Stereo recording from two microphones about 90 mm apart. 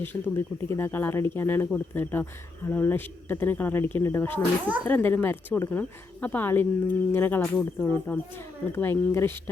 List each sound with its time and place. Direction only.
0.0 s speech: 25° left (ahead or behind)